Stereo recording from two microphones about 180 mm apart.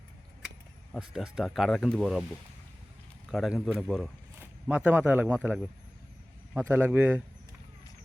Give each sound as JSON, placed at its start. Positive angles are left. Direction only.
{"t": 0.9, "sound": "speech", "side_deg": -5}
{"t": 3.3, "sound": "a man's voice", "side_deg": 0}